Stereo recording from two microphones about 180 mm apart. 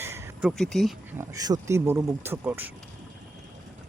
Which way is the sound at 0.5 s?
Centre (ahead or behind).